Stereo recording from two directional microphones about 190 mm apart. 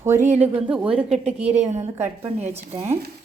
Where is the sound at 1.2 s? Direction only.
35° right (ahead or behind).